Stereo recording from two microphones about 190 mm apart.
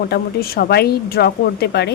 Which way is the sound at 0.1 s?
55° left (ahead or behind).